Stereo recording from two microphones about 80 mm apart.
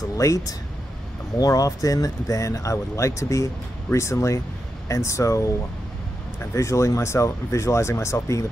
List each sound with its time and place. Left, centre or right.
0.2 s speech: left
6.5 s speech: left